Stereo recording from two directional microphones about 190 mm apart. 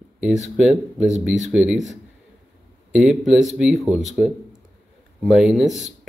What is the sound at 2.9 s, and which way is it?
Speech, centre (ahead or behind).